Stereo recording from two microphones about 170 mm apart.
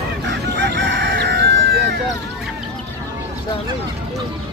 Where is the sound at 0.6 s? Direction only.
90° right.